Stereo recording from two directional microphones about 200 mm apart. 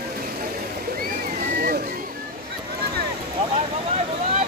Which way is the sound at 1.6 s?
50° right (ahead or behind).